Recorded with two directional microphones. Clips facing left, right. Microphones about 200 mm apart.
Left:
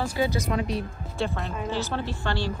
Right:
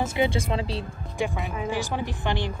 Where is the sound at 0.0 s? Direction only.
25° right (ahead or behind).